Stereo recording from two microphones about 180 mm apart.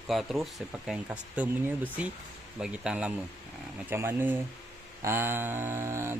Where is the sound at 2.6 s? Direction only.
5° right (ahead or behind).